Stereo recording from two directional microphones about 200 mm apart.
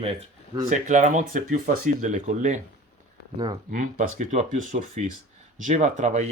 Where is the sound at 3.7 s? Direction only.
40° right (ahead or behind).